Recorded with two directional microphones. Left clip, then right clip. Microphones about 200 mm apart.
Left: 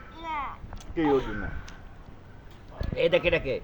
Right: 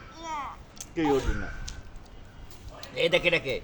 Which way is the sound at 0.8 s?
25° left (ahead or behind).